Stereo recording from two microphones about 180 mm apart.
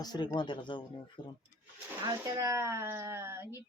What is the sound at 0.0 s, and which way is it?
Speech, 20° left (ahead or behind).